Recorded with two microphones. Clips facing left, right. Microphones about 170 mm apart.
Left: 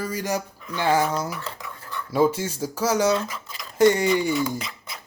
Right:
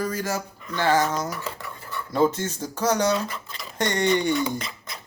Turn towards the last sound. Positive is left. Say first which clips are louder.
# even
turn(degrees=0)  # may be behind; listen again after turning